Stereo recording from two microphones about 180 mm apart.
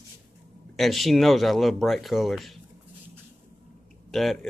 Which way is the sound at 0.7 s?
Centre (ahead or behind).